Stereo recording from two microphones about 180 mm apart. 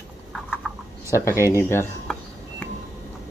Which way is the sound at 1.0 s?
15° left (ahead or behind).